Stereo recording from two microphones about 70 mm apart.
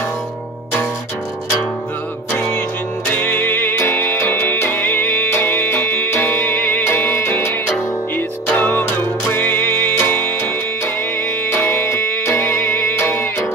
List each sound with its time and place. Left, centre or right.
2.3 s music: left
8.5 s music: left
11.5 s music: left